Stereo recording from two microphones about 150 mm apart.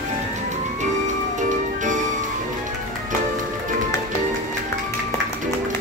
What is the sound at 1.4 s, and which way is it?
Music, 55° right (ahead or behind).